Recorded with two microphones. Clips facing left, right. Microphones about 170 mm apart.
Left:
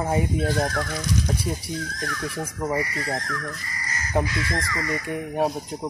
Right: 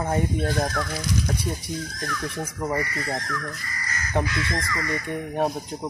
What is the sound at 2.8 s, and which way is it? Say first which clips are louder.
Speech: left 1 dB; 25° left (ahead or behind).